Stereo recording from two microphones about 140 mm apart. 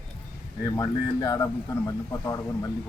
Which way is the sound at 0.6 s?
25° left (ahead or behind).